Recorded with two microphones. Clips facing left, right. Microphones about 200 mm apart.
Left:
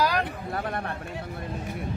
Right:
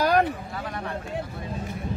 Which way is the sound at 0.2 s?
55° left (ahead or behind).